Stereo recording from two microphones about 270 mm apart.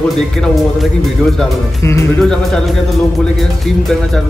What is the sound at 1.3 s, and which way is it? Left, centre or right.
Speech, centre.